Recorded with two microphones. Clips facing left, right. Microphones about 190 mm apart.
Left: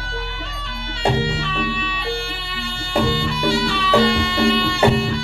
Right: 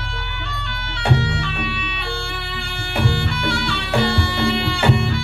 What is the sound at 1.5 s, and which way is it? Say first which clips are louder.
Music: left 3 dB; 60° right (ahead or behind).